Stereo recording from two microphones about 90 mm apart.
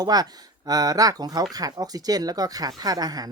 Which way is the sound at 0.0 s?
45° right (ahead or behind).